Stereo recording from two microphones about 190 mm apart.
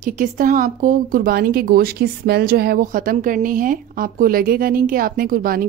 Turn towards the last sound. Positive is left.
turn(degrees=-50)  # may be behind; listen again after turning